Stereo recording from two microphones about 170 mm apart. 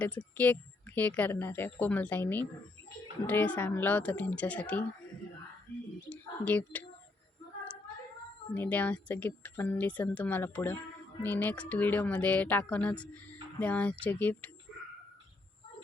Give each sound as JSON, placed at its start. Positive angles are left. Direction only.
{"t": 0.3, "sound": "speech", "side_deg": 10}
{"t": 6.1, "sound": "speech", "side_deg": 10}
{"t": 8.5, "sound": "speech", "side_deg": 10}